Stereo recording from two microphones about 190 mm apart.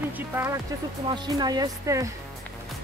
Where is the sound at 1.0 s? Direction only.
25° right (ahead or behind).